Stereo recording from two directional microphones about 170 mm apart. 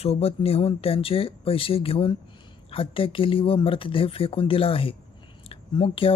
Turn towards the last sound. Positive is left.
turn(degrees=30)  # may be behind; listen again after turning